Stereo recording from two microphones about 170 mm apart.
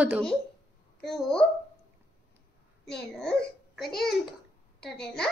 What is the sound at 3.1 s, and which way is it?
Speech, 5° left (ahead or behind).